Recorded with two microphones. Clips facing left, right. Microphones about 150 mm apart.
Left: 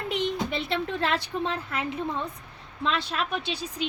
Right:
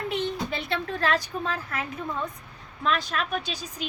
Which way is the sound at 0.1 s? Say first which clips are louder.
Left 4 dB; 25° left (ahead or behind).